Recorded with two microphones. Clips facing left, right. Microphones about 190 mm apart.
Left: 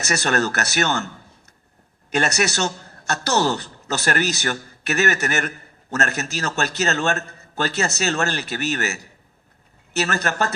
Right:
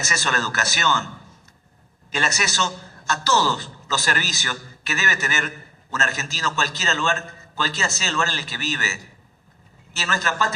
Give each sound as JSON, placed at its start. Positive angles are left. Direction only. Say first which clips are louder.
{"t": 0.1, "sound": "a man's voice", "louder": "left 7 dB", "side_deg": 60}
{"t": 2.1, "sound": "a man's voice", "louder": "left 4 dB", "side_deg": 60}
{"t": 10.1, "sound": "a man's voice", "louder": "right 2 dB", "side_deg": 55}